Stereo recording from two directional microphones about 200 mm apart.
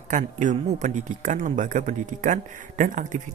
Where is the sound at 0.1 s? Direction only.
40° right (ahead or behind).